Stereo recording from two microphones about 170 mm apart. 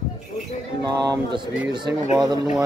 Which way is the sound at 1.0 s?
25° right (ahead or behind).